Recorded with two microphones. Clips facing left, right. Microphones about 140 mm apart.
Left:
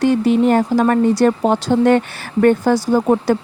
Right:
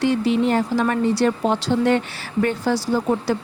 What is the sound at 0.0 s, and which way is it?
Speech, 50° left (ahead or behind).